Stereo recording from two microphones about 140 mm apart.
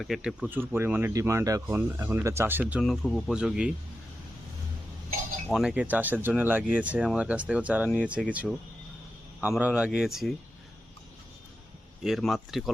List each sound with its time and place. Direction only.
0.0 s speech: centre (ahead or behind)
2.8 s speech: centre (ahead or behind)
5.5 s speech: centre (ahead or behind)
5.7 s speech: 10° right (ahead or behind)
9.4 s speech: 10° right (ahead or behind)
12.0 s speech: centre (ahead or behind)